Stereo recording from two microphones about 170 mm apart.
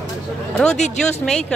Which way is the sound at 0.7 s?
45° left (ahead or behind).